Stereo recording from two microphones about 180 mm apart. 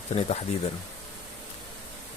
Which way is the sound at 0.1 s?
35° left (ahead or behind).